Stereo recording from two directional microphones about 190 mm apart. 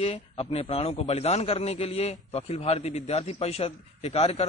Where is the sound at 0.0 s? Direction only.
30° left (ahead or behind).